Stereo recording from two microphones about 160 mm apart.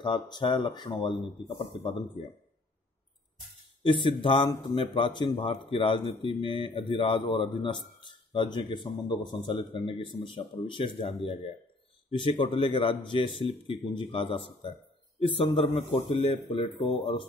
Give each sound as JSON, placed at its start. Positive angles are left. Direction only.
{"t": 0.0, "sound": "a man's voice", "side_deg": 30}
{"t": 3.8, "sound": "a man's voice", "side_deg": 30}